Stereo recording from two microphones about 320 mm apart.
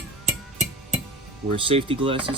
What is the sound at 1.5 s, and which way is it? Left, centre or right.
Speech, centre.